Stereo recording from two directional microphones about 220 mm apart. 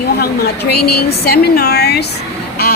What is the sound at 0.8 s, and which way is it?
Speech, 90° left.